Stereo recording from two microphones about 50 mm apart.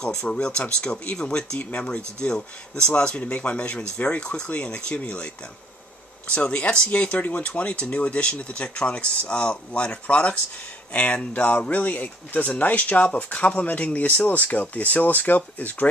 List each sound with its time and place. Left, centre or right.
0.2 s speech: centre
1.6 s speech: left
1.9 s speech: centre; by 15.9 s left